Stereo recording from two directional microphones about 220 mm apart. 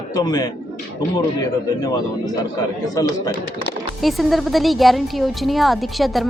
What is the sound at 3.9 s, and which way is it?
Speech, centre (ahead or behind).